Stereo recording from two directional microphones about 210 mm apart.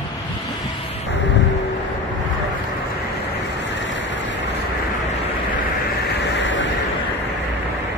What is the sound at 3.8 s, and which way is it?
Vehicle, 60° left (ahead or behind).